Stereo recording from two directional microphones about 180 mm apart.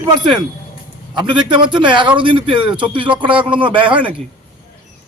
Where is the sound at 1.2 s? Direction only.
25° right (ahead or behind).